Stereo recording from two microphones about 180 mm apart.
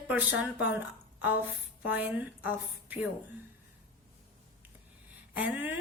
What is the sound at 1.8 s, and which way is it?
A woman's voice, 10° right (ahead or behind).